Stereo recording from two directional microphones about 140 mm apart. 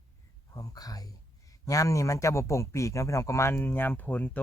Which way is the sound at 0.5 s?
25° left (ahead or behind).